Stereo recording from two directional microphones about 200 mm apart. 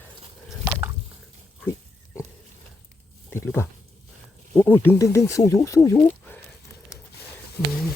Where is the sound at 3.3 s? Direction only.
10° left (ahead or behind).